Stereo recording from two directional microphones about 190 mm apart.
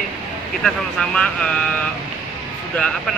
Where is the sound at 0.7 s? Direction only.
5° left (ahead or behind).